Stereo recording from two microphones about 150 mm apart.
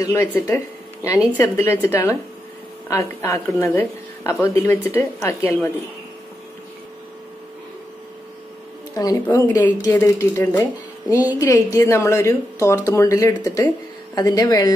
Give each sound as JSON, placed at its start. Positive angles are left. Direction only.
{"t": 0.0, "sound": "a woman's voice", "side_deg": 20}
{"t": 8.9, "sound": "speech", "side_deg": 20}